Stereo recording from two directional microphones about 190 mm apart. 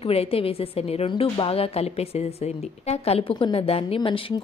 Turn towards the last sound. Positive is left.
turn(degrees=25)  # may be behind; listen again after turning